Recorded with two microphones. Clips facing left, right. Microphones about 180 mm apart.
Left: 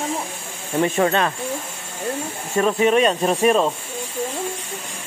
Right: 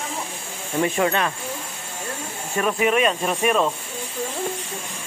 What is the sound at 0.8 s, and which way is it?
Speech, 30° left (ahead or behind).